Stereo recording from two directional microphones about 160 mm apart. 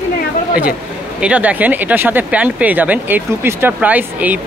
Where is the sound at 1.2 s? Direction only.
10° right (ahead or behind).